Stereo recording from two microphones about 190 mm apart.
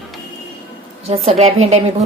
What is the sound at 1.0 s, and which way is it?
Speech, 35° right (ahead or behind).